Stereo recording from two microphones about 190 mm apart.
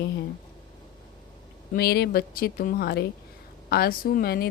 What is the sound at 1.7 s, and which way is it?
Speech, 55° left (ahead or behind).